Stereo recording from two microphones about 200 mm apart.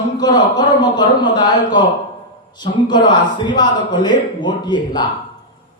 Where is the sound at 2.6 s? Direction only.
20° left (ahead or behind).